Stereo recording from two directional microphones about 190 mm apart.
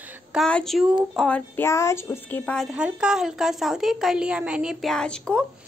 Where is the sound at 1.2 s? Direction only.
10° left (ahead or behind).